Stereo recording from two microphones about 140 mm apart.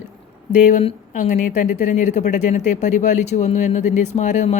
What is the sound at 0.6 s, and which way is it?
A woman's voice, 60° left (ahead or behind).